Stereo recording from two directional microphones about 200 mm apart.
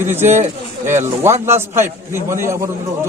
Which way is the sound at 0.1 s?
10° right (ahead or behind).